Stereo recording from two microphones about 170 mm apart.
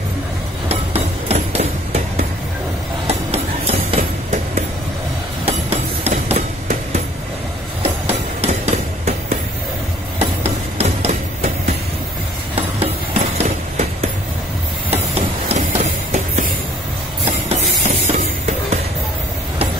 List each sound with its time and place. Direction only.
0.7 s hammer: 35° right (ahead or behind)
3.1 s music: 35° right (ahead or behind)
5.4 s a sound: 40° right (ahead or behind)
7.8 s hammer: 40° right (ahead or behind)
10.1 s train: 35° right (ahead or behind)
12.5 s a sound: 35° right (ahead or behind)
14.9 s music: 35° right (ahead or behind)
17.2 s train: 40° right (ahead or behind)